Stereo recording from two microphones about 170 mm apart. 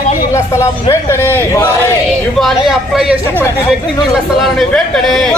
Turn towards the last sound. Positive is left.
turn(degrees=0)  # may be behind; listen again after turning